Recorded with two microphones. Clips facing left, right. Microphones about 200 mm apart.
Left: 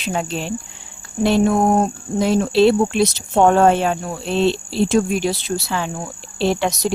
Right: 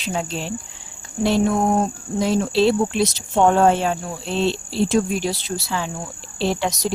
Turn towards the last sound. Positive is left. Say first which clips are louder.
# left 3 dB
turn(degrees=60)  # may be behind; listen again after turning